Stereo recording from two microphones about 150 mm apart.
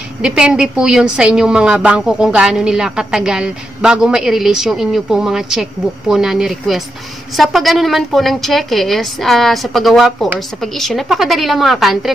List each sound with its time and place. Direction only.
0.2 s a woman's voice: 5° right (ahead or behind)